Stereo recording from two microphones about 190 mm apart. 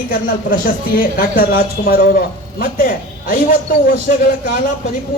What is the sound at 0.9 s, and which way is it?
Speech, 50° left (ahead or behind).